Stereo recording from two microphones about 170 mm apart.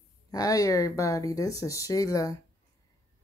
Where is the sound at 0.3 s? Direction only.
20° left (ahead or behind).